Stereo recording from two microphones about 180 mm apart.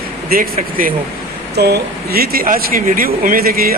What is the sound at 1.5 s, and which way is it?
Speech, 65° right (ahead or behind).